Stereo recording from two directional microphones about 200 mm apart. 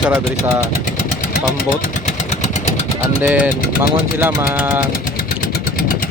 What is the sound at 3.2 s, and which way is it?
Speech, 5° right (ahead or behind).